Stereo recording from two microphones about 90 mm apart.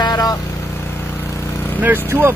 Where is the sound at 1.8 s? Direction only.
25° right (ahead or behind).